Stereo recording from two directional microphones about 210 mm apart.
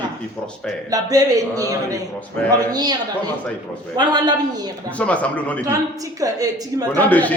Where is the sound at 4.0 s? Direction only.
20° right (ahead or behind).